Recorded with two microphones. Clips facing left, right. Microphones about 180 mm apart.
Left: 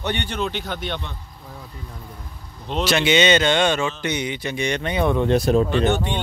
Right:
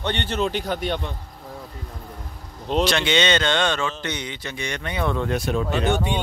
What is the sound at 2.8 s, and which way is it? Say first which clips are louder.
Speech: left 3 dB; 5° left (ahead or behind).